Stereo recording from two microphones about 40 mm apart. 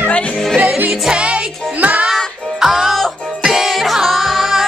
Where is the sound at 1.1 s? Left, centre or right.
Right.